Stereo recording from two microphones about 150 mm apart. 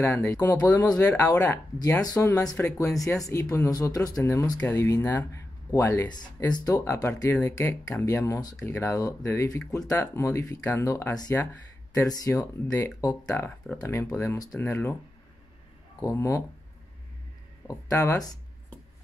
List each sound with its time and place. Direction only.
0.0 s speech: 15° left (ahead or behind)
0.7 s speech: 25° left (ahead or behind)
1.0 s speech: 15° left (ahead or behind)
16.0 s speech: 20° left (ahead or behind)
17.6 s speech: 20° left (ahead or behind)